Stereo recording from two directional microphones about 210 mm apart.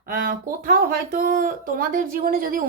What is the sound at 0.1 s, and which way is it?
Speech, 40° right (ahead or behind).